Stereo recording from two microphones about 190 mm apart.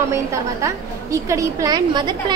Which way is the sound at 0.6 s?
15° right (ahead or behind).